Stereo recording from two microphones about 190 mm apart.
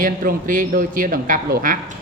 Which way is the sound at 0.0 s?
45° right (ahead or behind).